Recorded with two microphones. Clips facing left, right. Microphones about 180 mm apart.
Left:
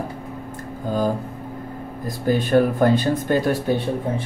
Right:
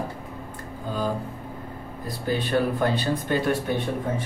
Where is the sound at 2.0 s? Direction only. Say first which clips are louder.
Left 6 dB; 45° left (ahead or behind).